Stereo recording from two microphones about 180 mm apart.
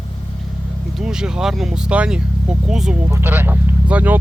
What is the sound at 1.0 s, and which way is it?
Speech, 5° right (ahead or behind).